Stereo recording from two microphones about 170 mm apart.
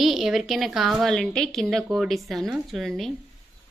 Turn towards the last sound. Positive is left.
turn(degrees=0)  # may be behind; listen again after turning